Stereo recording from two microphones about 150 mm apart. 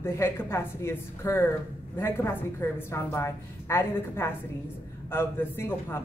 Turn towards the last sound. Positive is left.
turn(degrees=15)  # may be behind; listen again after turning